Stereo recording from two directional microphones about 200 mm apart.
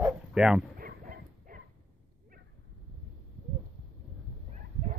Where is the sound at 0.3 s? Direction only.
5° right (ahead or behind).